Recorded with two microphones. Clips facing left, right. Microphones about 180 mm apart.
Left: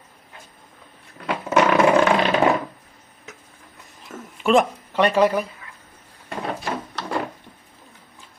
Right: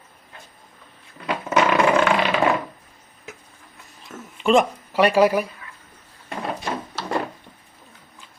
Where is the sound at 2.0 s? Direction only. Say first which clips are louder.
Left 2 dB; 20° left (ahead or behind).